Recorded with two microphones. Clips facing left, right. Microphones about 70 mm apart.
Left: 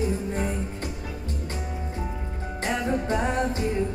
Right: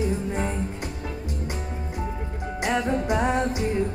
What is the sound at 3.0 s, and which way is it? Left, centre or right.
Music, centre.